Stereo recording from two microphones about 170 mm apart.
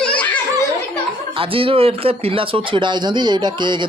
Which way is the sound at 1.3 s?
30° right (ahead or behind).